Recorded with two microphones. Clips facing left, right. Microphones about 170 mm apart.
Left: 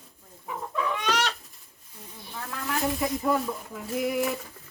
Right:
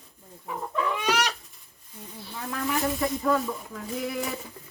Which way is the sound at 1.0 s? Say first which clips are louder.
Right 1 dB; 10° right (ahead or behind).